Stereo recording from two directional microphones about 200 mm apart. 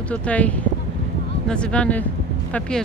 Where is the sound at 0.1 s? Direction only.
5° left (ahead or behind).